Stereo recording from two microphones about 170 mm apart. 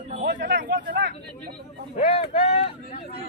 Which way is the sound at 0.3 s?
90° right.